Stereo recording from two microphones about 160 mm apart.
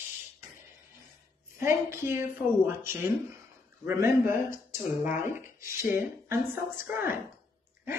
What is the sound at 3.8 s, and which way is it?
Speech, 15° right (ahead or behind).